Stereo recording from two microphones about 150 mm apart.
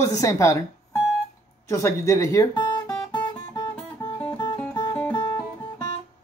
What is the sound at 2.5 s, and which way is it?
Guitar, 30° left (ahead or behind).